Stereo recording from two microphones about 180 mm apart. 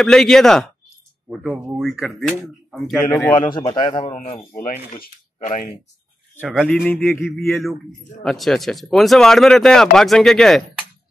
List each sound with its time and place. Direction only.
0.0 s speech: 5° left (ahead or behind)
3.1 s speech: 15° left (ahead or behind)
3.5 s a man's voice: 25° left (ahead or behind)
4.1 s speech: 40° left (ahead or behind)
6.4 s speech: 5° right (ahead or behind)
6.7 s speech: 10° left (ahead or behind)
7.4 s speech: centre (ahead or behind)